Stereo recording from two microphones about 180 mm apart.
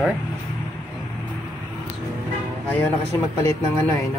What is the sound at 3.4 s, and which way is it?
Speech, 15° left (ahead or behind).